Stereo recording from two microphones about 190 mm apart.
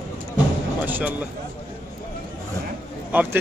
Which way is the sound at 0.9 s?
10° right (ahead or behind).